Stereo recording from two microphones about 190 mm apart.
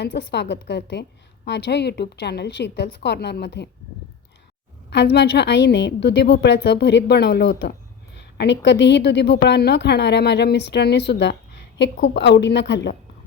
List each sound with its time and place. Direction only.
0.0 s a woman's voice: 60° left (ahead or behind)
4.9 s a woman's voice: 65° left (ahead or behind)